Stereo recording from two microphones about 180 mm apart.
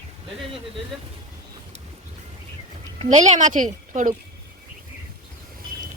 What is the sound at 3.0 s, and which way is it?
Speech, 40° right (ahead or behind).